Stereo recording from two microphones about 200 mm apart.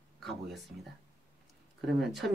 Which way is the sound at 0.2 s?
Centre (ahead or behind).